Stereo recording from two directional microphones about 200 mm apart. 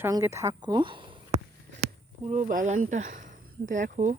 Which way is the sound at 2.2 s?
35° right (ahead or behind).